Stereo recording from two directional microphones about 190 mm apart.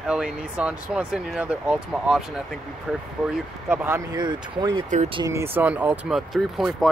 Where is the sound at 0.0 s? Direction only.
5° right (ahead or behind).